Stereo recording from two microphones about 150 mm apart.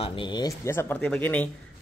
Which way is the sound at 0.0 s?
35° left (ahead or behind).